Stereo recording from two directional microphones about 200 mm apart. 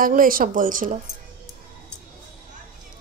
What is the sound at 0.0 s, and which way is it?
Speech, 45° right (ahead or behind).